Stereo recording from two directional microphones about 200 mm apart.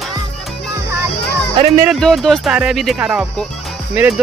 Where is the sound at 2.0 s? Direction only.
Centre (ahead or behind).